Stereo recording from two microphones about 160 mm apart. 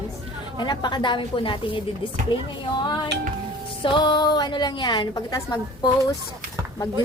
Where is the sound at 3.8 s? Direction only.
30° left (ahead or behind).